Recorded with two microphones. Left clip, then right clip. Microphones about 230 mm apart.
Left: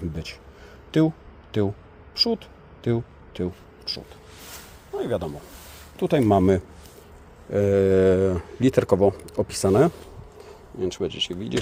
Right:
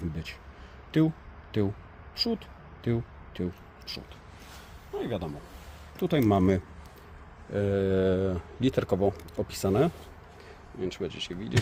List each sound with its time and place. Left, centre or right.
0.9 s speech: left
2.1 s a sound: left
4.9 s a man's voice: left